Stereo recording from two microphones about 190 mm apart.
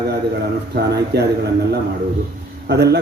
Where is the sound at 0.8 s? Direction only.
60° right (ahead or behind).